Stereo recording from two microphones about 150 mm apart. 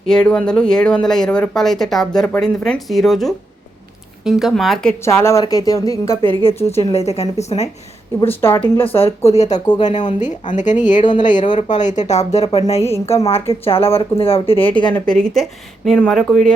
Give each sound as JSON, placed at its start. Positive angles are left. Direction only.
{"t": 0.1, "sound": "speech", "side_deg": 5}
{"t": 5.0, "sound": "speech", "side_deg": 20}
{"t": 6.2, "sound": "speech", "side_deg": 40}
{"t": 8.4, "sound": "speech", "side_deg": 15}
{"t": 8.6, "sound": "speech", "side_deg": 40}
{"t": 14.9, "sound": "speech", "side_deg": 5}